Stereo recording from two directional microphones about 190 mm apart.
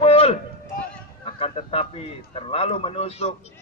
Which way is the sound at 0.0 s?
30° left (ahead or behind).